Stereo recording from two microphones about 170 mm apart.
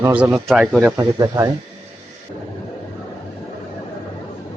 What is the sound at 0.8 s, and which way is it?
Speech, 20° right (ahead or behind).